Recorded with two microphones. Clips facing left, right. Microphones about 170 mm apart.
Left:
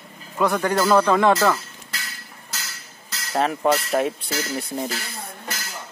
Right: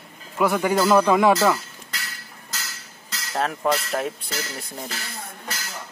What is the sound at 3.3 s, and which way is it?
Speech, 5° left (ahead or behind).